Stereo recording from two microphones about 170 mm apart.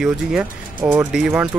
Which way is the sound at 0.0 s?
5° right (ahead or behind).